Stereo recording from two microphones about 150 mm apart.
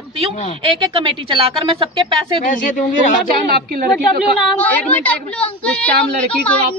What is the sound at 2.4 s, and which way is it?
Speech, 60° left (ahead or behind).